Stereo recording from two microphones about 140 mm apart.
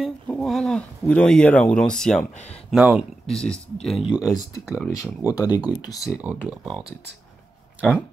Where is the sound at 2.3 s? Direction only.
50° left (ahead or behind).